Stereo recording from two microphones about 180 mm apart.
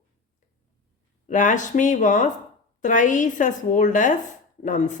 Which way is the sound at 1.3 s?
45° left (ahead or behind).